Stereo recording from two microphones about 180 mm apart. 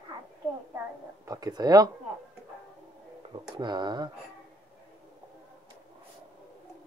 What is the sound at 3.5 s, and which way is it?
Speech, 25° right (ahead or behind).